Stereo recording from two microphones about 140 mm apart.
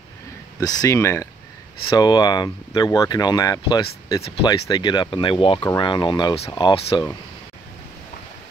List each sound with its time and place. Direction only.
0.6 s speech: 25° left (ahead or behind); by 7.1 s 40° left (ahead or behind)